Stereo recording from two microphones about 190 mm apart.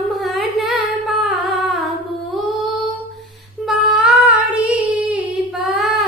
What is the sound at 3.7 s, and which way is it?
Female singing, 5° right (ahead or behind).